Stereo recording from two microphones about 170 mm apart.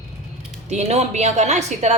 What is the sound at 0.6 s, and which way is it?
Speech, 40° right (ahead or behind).